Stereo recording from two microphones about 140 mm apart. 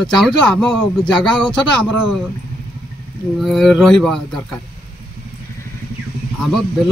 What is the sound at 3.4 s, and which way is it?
Speech, centre (ahead or behind).